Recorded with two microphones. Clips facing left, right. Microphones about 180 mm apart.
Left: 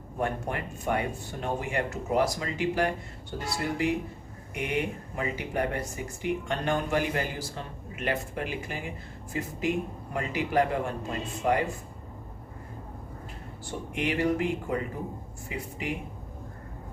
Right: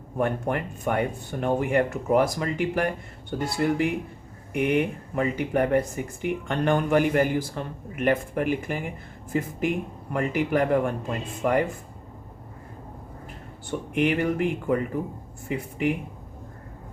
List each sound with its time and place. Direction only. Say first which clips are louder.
0.2 s a man's voice: right 5 dB; 55° right (ahead or behind)
13.7 s speech: right 7 dB; 55° right (ahead or behind)